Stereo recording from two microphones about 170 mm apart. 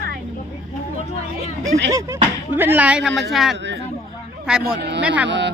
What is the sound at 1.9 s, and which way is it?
Speech, 20° right (ahead or behind).